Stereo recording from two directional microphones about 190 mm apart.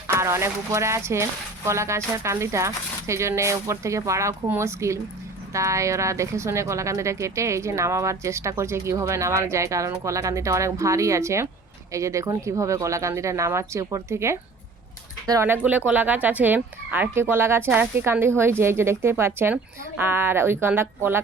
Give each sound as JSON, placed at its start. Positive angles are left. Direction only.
{"t": 0.1, "sound": "speech", "side_deg": -15}